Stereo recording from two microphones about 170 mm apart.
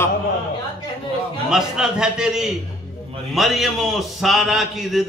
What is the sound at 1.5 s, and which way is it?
A man's voice, 5° right (ahead or behind).